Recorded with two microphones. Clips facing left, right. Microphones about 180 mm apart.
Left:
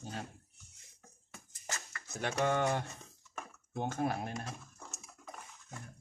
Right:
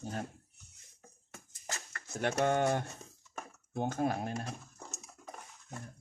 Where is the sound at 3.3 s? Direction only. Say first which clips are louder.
Right 2 dB; 40° right (ahead or behind).